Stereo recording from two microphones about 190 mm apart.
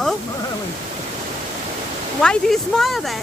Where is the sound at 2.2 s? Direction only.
5° left (ahead or behind).